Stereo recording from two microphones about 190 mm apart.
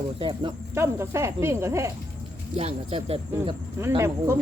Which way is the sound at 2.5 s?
35° right (ahead or behind).